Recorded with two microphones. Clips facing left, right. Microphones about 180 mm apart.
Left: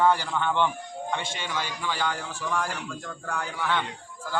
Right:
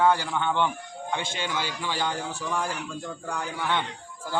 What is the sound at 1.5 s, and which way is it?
A man's voice, 20° right (ahead or behind).